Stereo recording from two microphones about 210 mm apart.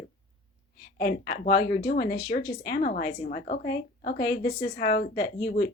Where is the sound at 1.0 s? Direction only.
50° left (ahead or behind).